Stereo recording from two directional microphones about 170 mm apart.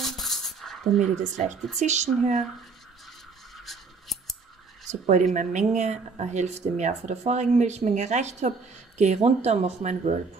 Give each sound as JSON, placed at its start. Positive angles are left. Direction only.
{"t": 0.0, "sound": "a sound", "side_deg": 0}
{"t": 1.3, "sound": "speech", "side_deg": -45}
{"t": 3.5, "sound": "scissors", "side_deg": 0}
{"t": 5.3, "sound": "speech", "side_deg": -45}